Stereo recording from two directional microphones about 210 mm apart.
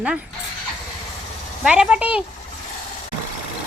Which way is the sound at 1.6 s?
5° right (ahead or behind).